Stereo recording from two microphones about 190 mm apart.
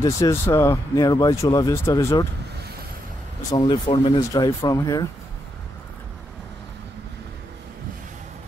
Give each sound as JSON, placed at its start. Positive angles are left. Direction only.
{"t": 0.0, "sound": "speech", "side_deg": 15}
{"t": 3.5, "sound": "speech", "side_deg": 20}